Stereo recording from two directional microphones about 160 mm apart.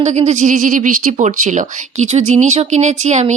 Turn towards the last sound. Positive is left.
turn(degrees=-45)  # may be behind; listen again after turning